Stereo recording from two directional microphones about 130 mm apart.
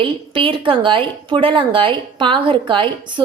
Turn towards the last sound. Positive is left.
turn(degrees=-40)  # may be behind; listen again after turning